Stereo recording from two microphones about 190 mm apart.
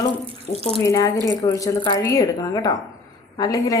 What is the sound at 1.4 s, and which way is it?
A woman's voice, 15° left (ahead or behind).